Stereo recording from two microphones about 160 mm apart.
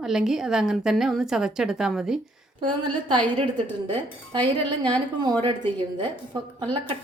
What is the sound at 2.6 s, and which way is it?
A woman's voice, 30° right (ahead or behind).